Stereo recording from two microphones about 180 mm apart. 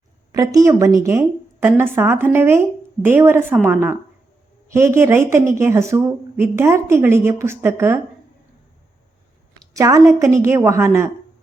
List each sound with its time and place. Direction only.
0.3 s a woman's voice: 20° right (ahead or behind)
9.6 s a woman's voice: 20° right (ahead or behind)